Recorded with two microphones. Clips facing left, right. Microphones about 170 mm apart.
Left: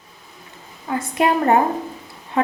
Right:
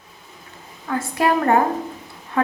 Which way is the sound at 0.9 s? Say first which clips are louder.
Left 1 dB; 20° left (ahead or behind).